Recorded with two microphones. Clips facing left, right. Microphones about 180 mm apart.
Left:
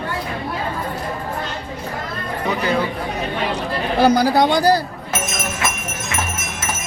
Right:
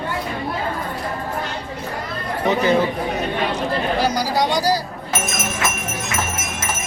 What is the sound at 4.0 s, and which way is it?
Speech, 55° left (ahead or behind).